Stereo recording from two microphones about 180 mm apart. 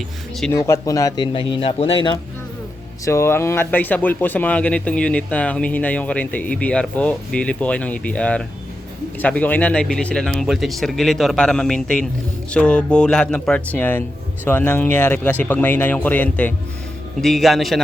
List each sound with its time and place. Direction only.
0.5 s speech: 15° left (ahead or behind)
3.0 s speech: 15° left (ahead or behind); by 17.7 s centre (ahead or behind)